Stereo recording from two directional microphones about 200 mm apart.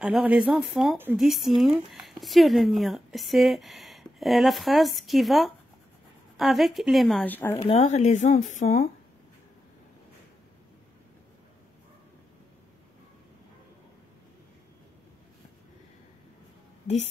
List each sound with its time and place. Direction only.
0.0 s speech: 5° right (ahead or behind)
7.5 s speech: 30° left (ahead or behind)